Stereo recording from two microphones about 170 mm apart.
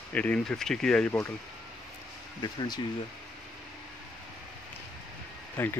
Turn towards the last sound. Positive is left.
turn(degrees=10)  # may be behind; listen again after turning